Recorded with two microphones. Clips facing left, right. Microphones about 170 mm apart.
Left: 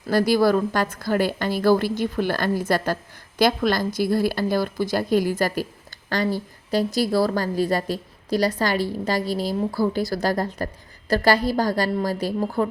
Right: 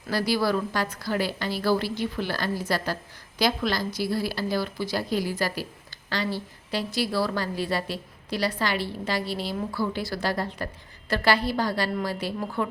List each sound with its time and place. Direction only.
0.1 s a woman's voice: 50° left (ahead or behind)